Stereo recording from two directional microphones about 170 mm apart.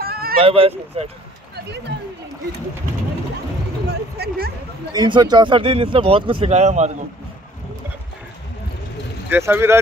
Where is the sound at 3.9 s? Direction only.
70° right (ahead or behind).